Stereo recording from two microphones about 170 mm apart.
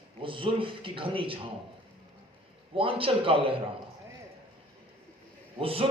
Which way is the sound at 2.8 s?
30° right (ahead or behind).